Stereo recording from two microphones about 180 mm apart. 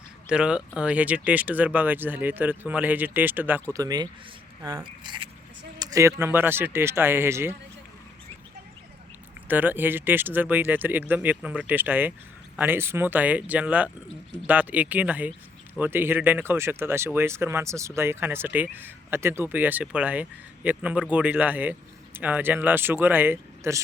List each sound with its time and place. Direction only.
0.3 s speech: 5° right (ahead or behind)
9.5 s speech: 10° right (ahead or behind)